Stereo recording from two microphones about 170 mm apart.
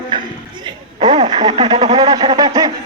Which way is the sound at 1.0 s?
25° right (ahead or behind).